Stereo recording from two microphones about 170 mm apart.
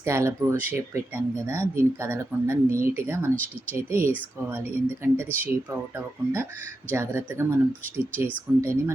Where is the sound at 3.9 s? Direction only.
15° right (ahead or behind).